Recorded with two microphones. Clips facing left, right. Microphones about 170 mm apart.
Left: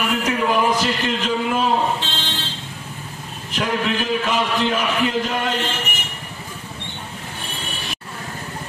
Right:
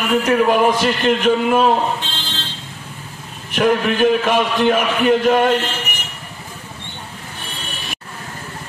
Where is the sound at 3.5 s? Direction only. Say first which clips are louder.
Right 6 dB; 60° right (ahead or behind).